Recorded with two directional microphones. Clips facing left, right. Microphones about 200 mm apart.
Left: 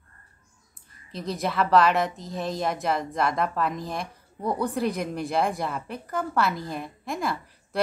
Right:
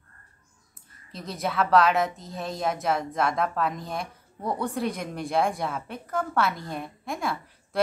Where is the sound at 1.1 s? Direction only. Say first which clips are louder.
Left 2 dB; centre (ahead or behind).